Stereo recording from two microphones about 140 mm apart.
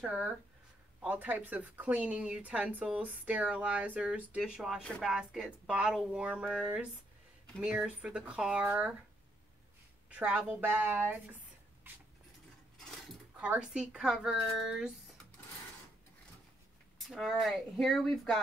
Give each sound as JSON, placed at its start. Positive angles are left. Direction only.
{"t": 0.0, "sound": "speech", "side_deg": -10}
{"t": 4.8, "sound": "speech", "side_deg": 5}
{"t": 5.1, "sound": "a woman's voice", "side_deg": -5}
{"t": 10.0, "sound": "speech", "side_deg": -10}
{"t": 13.4, "sound": "a woman's voice", "side_deg": -5}
{"t": 17.0, "sound": "a woman's voice", "side_deg": 0}